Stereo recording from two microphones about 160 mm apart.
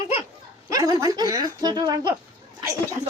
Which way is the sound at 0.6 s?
25° right (ahead or behind).